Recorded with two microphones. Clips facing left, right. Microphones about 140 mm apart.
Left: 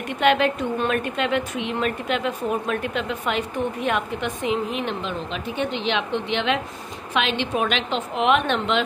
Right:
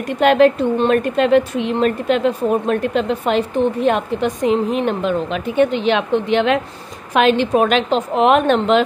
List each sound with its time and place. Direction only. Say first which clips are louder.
0.2 s a woman's voice: right 7 dB; 40° right (ahead or behind)